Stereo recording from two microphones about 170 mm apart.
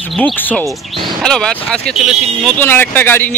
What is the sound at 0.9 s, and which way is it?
Speech, 30° right (ahead or behind).